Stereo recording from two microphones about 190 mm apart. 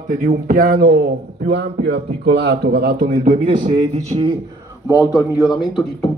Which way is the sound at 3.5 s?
30° right (ahead or behind).